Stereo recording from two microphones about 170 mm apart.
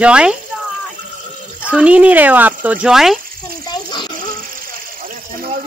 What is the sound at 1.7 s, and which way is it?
Speech, 5° right (ahead or behind).